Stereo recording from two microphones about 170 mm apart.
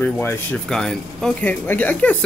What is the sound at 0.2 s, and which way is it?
Speech, 5° left (ahead or behind).